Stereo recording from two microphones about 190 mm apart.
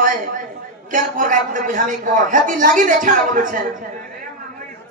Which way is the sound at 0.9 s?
45° right (ahead or behind).